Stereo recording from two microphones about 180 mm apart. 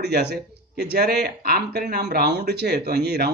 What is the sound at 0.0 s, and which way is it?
Speech, 65° right (ahead or behind).